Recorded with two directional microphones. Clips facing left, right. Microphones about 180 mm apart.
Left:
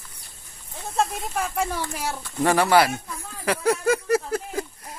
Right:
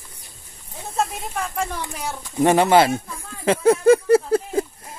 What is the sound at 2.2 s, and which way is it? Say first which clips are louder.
Speech: right 5 dB; 20° right (ahead or behind).